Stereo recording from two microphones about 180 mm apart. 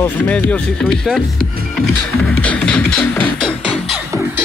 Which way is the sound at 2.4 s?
5° left (ahead or behind).